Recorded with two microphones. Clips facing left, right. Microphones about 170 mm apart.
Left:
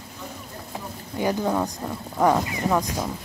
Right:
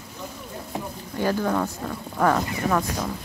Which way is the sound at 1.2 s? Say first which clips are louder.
Even; 15° left (ahead or behind).